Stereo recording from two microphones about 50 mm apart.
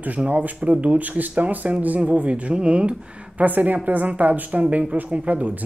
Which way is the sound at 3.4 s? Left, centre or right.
Right.